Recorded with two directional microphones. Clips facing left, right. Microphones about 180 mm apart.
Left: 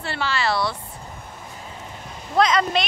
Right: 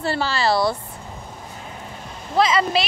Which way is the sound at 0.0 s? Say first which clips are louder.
Right 3 dB; 40° right (ahead or behind).